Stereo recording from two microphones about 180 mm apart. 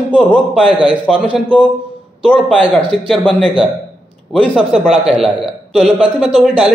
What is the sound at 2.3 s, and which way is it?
A man's voice, 5° left (ahead or behind).